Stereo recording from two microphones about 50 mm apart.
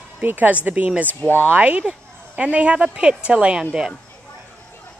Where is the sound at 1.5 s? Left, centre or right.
Right.